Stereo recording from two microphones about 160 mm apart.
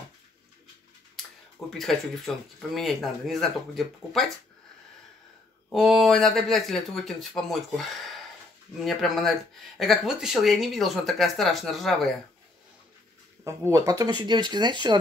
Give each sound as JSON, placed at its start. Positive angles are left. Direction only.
{"t": 1.7, "sound": "speech", "side_deg": 0}
{"t": 5.7, "sound": "speech", "side_deg": 0}
{"t": 13.4, "sound": "speech", "side_deg": -20}